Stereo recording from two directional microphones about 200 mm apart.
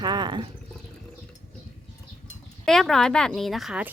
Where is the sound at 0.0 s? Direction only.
20° right (ahead or behind).